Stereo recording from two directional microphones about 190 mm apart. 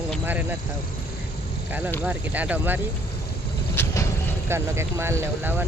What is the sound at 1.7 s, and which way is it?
Speech, 10° right (ahead or behind).